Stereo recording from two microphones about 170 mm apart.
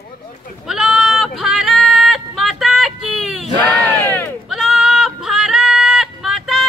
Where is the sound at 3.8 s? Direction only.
10° left (ahead or behind).